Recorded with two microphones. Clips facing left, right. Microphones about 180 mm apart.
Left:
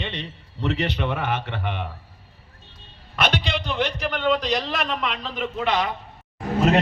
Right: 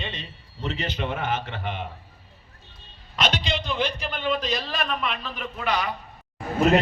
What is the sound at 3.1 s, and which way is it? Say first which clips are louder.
A man's voice: left 2 dB; 60° left (ahead or behind).